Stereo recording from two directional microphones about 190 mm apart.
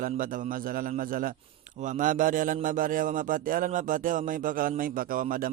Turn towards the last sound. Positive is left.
turn(degrees=-45)  # may be behind; listen again after turning